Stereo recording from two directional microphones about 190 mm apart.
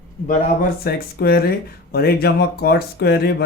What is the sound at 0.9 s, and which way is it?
Speech, 55° left (ahead or behind).